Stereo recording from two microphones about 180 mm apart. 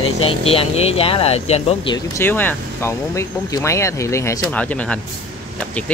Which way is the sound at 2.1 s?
10° left (ahead or behind).